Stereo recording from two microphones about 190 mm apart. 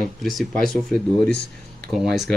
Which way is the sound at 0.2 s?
Centre (ahead or behind).